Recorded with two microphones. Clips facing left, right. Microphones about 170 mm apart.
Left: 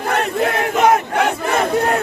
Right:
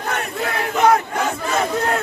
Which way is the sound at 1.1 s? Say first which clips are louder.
Left 4 dB; 65° left (ahead or behind).